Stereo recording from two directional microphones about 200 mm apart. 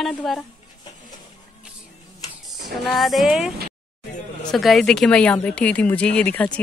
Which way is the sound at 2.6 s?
Centre (ahead or behind).